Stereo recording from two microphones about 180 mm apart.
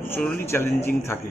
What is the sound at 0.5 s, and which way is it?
Speech, 15° left (ahead or behind).